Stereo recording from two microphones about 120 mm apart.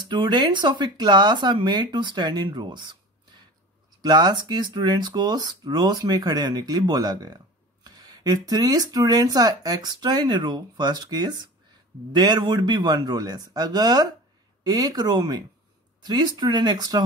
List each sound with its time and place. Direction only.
0.0 s speech: 40° right (ahead or behind)
4.0 s speech: 35° right (ahead or behind)